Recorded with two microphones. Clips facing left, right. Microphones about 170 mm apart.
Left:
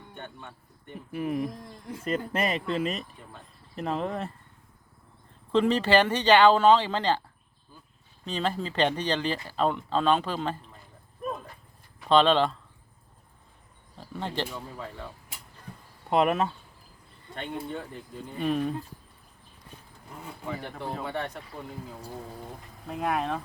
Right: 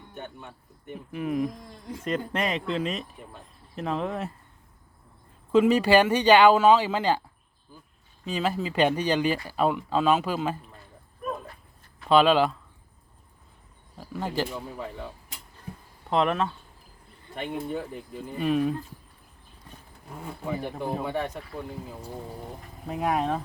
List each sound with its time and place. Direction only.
0.1 s speech: 5° right (ahead or behind)
5.5 s speech: 10° right (ahead or behind)
8.2 s speech: 5° right (ahead or behind)
12.0 s speech: 5° right (ahead or behind)
14.0 s speech: 5° right (ahead or behind)
16.0 s speech: 10° left (ahead or behind)
17.3 s speech: 5° right (ahead or behind)
20.4 s speech: 10° right (ahead or behind)
22.9 s speech: 15° right (ahead or behind)